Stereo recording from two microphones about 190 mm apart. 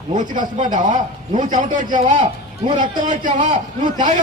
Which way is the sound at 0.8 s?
40° right (ahead or behind).